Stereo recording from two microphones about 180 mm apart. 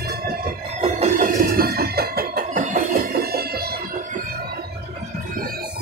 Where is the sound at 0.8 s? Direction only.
45° right (ahead or behind); by 3.7 s 60° right (ahead or behind).